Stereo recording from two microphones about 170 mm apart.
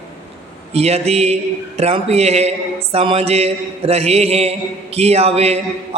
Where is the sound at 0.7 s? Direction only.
40° right (ahead or behind).